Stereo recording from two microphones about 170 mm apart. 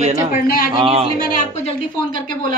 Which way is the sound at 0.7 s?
30° right (ahead or behind).